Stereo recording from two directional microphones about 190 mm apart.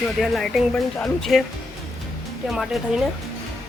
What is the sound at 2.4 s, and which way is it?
Speech, centre (ahead or behind).